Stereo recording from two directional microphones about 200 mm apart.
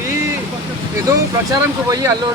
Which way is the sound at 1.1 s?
15° right (ahead or behind).